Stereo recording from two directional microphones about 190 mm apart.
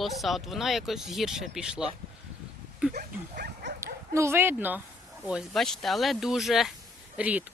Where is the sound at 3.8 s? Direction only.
15° right (ahead or behind).